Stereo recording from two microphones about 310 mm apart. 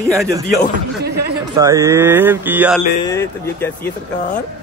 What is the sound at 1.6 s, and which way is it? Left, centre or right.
Speech, centre.